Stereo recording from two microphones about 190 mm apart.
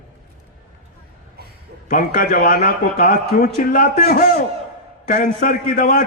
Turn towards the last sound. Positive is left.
turn(degrees=50)  # may be behind; listen again after turning